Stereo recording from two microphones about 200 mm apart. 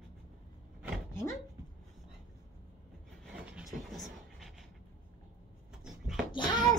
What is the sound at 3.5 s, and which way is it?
Vehicle, centre (ahead or behind).